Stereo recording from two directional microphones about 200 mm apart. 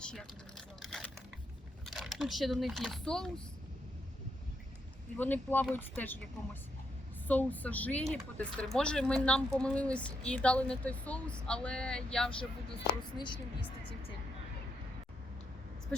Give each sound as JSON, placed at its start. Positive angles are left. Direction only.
{"t": 0.0, "sound": "vehicle", "side_deg": 5}
{"t": 1.8, "sound": "speech", "side_deg": 0}
{"t": 5.1, "sound": "speech", "side_deg": 10}
{"t": 13.1, "sound": "speech", "side_deg": 25}